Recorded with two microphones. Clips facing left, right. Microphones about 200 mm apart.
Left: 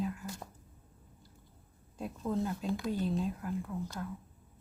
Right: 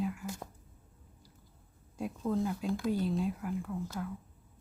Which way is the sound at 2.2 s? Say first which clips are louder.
Right 1 dB; 5° right (ahead or behind).